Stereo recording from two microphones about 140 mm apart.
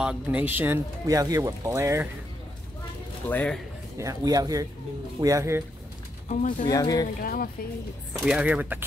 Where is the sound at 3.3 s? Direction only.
5° left (ahead or behind).